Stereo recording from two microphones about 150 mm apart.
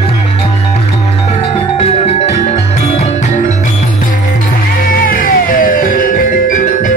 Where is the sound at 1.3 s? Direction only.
40° left (ahead or behind).